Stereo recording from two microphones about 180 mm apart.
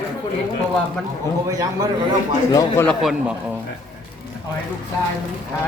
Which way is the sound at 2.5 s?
20° left (ahead or behind).